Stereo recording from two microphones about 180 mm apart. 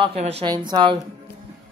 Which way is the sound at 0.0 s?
35° right (ahead or behind).